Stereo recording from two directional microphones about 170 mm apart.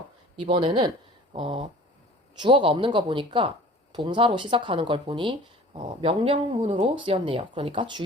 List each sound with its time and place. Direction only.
0.3 s speech: 30° right (ahead or behind)